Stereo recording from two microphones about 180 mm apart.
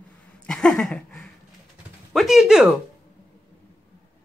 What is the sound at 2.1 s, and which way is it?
Speech, centre (ahead or behind).